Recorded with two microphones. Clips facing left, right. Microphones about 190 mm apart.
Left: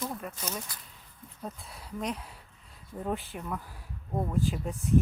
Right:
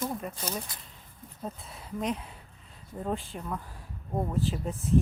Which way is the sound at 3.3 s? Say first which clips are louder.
Even; 5° left (ahead or behind).